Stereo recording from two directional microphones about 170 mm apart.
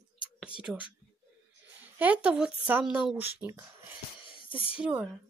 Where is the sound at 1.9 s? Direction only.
10° right (ahead or behind).